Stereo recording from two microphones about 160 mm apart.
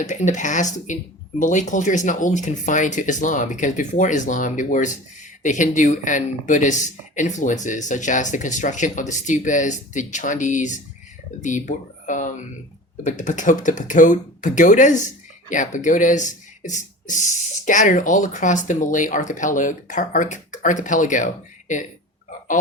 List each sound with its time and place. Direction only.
0.0 s speech: 50° left (ahead or behind)